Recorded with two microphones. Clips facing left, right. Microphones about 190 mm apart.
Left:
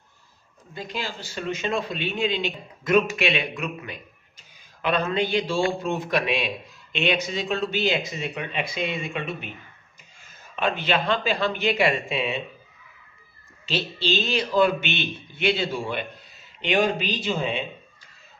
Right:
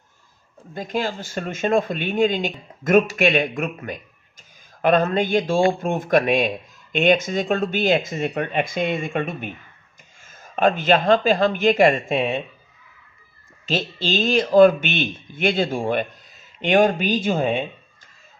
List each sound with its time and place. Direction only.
0.6 s a man's voice: 50° right (ahead or behind)
13.7 s a man's voice: 45° right (ahead or behind)